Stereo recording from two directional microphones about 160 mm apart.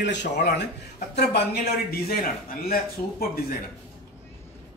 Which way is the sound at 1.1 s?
75° left (ahead or behind).